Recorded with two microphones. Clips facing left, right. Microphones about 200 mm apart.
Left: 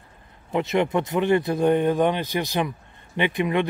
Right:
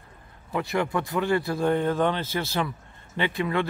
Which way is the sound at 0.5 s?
20° left (ahead or behind).